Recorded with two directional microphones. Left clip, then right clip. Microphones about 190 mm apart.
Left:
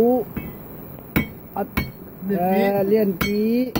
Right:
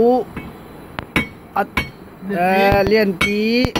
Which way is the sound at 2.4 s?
5° right (ahead or behind).